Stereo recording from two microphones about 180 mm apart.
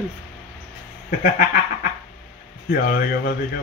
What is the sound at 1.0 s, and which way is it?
Speech, 55° left (ahead or behind).